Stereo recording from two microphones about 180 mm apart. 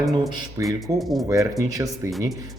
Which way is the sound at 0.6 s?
15° right (ahead or behind).